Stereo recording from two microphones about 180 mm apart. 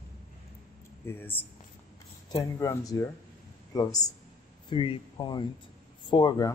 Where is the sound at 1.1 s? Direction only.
10° left (ahead or behind).